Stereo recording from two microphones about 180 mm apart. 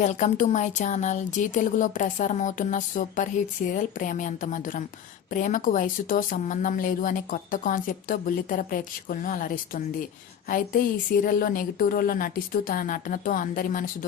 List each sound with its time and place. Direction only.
0.0 s a woman's voice: 45° left (ahead or behind)